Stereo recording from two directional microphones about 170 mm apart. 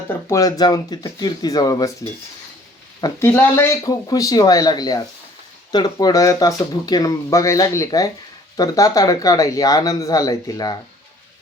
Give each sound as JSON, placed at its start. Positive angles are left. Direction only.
{"t": 0.1, "sound": "speech", "side_deg": 20}